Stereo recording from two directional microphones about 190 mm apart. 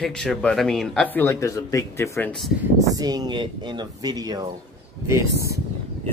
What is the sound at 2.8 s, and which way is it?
Speech, 20° right (ahead or behind).